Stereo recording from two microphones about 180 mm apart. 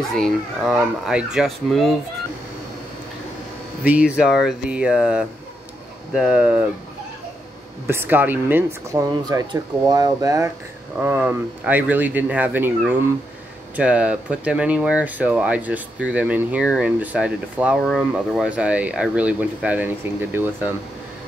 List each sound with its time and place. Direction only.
0.1 s speech: centre (ahead or behind)
3.8 s speech: 5° right (ahead or behind)
7.8 s speech: 15° right (ahead or behind)